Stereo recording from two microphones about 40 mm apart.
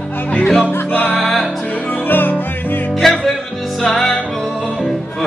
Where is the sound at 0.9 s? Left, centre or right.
Left.